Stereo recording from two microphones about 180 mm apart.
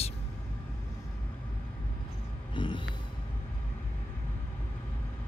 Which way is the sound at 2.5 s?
25° left (ahead or behind).